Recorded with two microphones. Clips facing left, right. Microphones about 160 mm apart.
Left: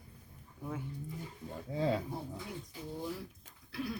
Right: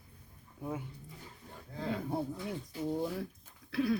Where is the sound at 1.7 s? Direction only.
90° left.